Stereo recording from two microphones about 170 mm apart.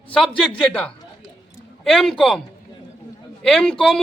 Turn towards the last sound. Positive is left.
turn(degrees=0)  # may be behind; listen again after turning